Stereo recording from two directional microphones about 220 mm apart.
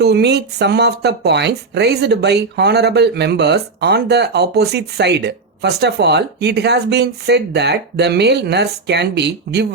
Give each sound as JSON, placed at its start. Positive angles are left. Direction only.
{"t": 0.0, "sound": "speech", "side_deg": -50}